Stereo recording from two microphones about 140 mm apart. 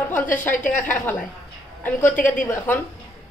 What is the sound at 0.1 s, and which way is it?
A woman's voice, 15° left (ahead or behind).